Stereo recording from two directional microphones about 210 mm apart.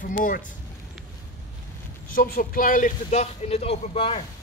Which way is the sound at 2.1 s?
40° left (ahead or behind).